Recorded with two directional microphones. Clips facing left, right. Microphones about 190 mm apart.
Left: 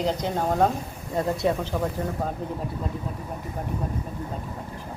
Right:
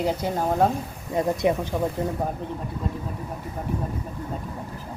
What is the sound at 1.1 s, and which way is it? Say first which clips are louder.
Speech: right 2 dB; 20° right (ahead or behind).